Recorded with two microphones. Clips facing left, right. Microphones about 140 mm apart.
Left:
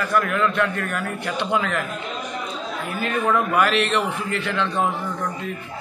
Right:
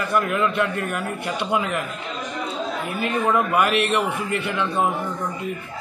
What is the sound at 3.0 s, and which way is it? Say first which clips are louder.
A man's voice: even; 10° right (ahead or behind).